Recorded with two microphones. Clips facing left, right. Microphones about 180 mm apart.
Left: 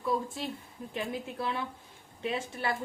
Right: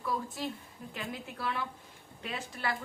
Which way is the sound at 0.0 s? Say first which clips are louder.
Left 3 dB; 25° left (ahead or behind).